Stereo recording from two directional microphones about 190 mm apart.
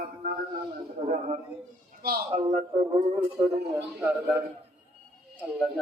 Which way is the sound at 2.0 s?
55° right (ahead or behind).